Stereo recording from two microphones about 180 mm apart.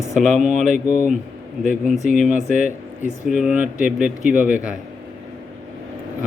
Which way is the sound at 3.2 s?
5° right (ahead or behind).